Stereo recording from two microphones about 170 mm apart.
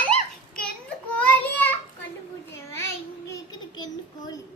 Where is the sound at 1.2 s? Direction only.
10° left (ahead or behind).